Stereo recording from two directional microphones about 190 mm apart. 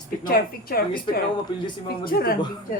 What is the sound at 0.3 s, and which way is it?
Speech, 50° left (ahead or behind).